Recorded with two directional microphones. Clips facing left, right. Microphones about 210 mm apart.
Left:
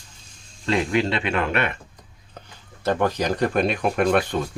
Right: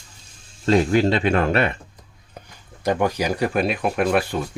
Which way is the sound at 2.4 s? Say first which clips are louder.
Right 1 dB; 10° right (ahead or behind).